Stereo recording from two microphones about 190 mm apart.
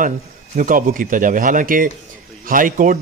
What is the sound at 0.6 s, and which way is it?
A man's voice, 45° right (ahead or behind).